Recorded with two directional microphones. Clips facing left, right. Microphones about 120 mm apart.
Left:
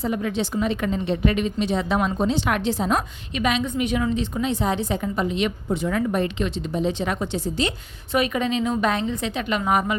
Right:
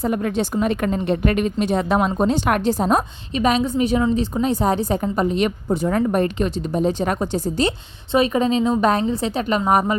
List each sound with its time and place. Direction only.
0.0 s a woman's voice: 50° right (ahead or behind)